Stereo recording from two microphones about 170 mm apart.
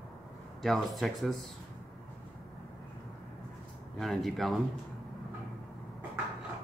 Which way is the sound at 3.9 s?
Centre (ahead or behind).